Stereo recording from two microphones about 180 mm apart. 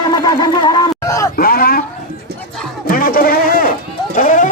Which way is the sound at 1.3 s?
55° left (ahead or behind).